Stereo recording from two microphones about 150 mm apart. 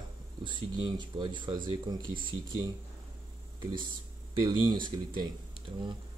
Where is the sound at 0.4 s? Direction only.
35° right (ahead or behind).